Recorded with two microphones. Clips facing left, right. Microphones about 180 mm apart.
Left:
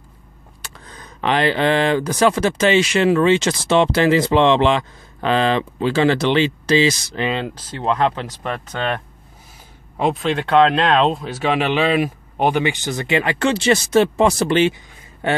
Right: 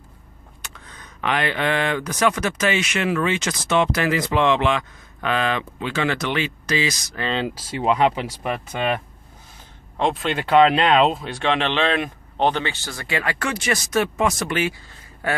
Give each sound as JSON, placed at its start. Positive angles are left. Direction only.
{"t": 0.6, "sound": "speech", "side_deg": 35}
{"t": 7.2, "sound": "speech", "side_deg": 0}
{"t": 9.9, "sound": "speech", "side_deg": 5}